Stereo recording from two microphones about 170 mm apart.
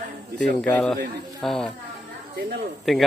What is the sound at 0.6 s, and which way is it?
Speech, 5° left (ahead or behind).